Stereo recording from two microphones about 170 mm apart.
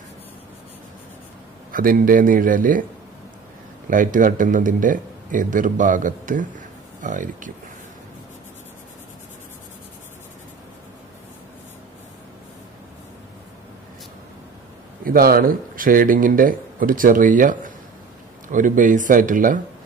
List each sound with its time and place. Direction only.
1.7 s speech: 55° right (ahead or behind)
3.9 s speech: 50° right (ahead or behind)
15.0 s speech: 60° right (ahead or behind)